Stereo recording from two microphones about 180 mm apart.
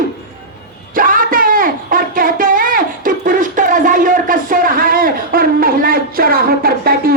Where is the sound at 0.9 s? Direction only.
50° right (ahead or behind).